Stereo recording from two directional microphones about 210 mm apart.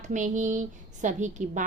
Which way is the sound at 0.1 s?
35° right (ahead or behind).